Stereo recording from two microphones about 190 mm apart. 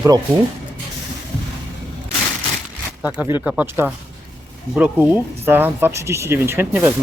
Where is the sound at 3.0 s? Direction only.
10° right (ahead or behind).